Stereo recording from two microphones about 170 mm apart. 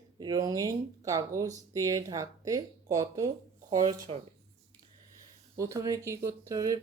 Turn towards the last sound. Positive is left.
turn(degrees=-20)  # may be behind; listen again after turning